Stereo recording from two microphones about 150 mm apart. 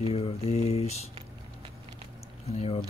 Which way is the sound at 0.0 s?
40° left (ahead or behind).